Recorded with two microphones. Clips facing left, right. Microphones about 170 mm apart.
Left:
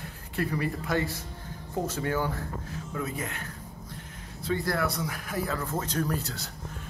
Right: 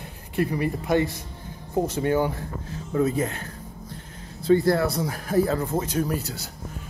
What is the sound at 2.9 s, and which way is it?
Speech, 30° right (ahead or behind).